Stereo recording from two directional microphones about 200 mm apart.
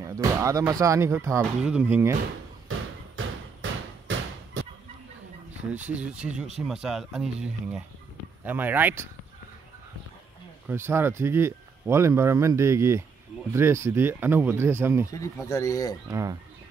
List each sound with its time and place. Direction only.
0.0 s speech: 15° right (ahead or behind)
2.7 s bouncing: 80° right
3.6 s bouncing: 75° right (ahead or behind)
5.7 s speech: 5° right (ahead or behind)
10.7 s speech: 10° right (ahead or behind)
15.0 s speech: 15° left (ahead or behind)
16.1 s speech: 15° right (ahead or behind)